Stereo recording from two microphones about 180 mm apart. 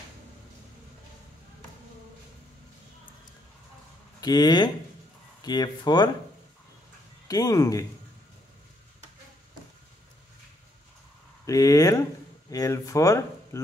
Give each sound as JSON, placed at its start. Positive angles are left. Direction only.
{"t": 4.2, "sound": "speech", "side_deg": 25}
{"t": 7.2, "sound": "speech", "side_deg": 20}
{"t": 11.4, "sound": "speech", "side_deg": 20}